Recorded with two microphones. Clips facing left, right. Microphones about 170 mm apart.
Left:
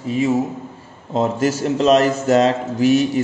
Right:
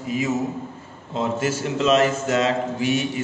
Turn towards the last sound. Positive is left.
turn(degrees=40)  # may be behind; listen again after turning